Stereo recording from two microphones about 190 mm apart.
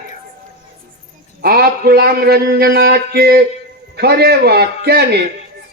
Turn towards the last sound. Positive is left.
turn(degrees=-55)  # may be behind; listen again after turning